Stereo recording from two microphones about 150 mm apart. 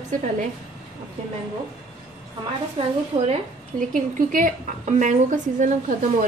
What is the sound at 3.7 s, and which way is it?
A woman's voice, 60° right (ahead or behind).